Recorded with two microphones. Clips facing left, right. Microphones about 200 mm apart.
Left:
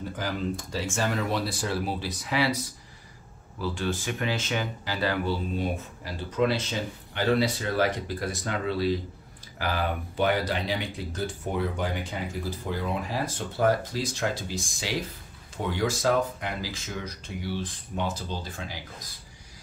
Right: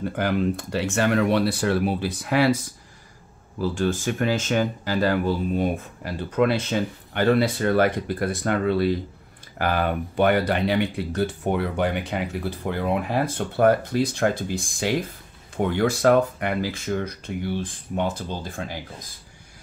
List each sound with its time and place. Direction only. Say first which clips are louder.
0.0 s speech: right 7 dB; 65° right (ahead or behind)
3.6 s speech: right 6 dB; 45° right (ahead or behind)